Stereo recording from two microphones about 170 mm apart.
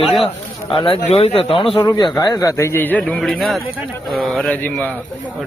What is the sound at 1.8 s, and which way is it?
A man's voice, 20° left (ahead or behind).